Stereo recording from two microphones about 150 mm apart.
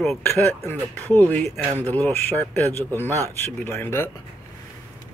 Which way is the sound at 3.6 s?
15° left (ahead or behind).